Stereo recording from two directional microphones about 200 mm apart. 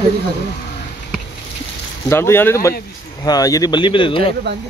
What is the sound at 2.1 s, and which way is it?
Speech, 10° left (ahead or behind).